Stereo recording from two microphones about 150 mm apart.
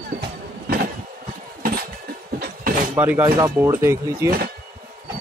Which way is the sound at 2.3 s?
65° right (ahead or behind).